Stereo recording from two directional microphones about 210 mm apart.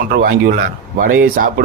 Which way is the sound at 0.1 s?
45° right (ahead or behind).